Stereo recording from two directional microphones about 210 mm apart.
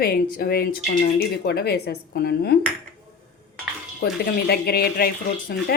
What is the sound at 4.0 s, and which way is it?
A woman's voice, 45° left (ahead or behind).